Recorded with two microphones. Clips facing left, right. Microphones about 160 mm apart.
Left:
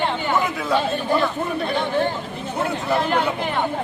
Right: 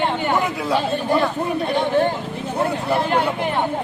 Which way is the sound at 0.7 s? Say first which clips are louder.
Right 1 dB; 10° right (ahead or behind).